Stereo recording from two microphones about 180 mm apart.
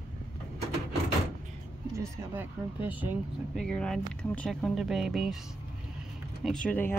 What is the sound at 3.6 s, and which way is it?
Speech, 5° left (ahead or behind).